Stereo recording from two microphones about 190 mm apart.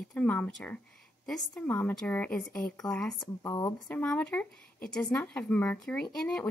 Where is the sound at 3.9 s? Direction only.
5° left (ahead or behind).